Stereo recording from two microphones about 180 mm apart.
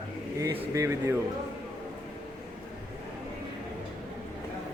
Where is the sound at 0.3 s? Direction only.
15° right (ahead or behind).